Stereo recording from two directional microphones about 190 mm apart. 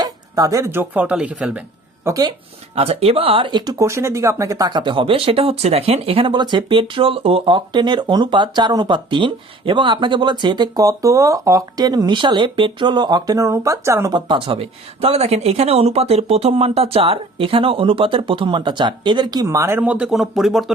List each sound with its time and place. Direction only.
0.0 s speech: 20° right (ahead or behind)
2.0 s speech: 20° right (ahead or behind)
2.7 s speech: 30° right (ahead or behind); by 20.7 s centre (ahead or behind)